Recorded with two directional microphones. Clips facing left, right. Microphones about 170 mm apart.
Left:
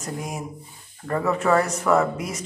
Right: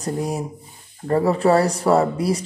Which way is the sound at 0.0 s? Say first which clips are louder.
Right 7 dB; 35° right (ahead or behind).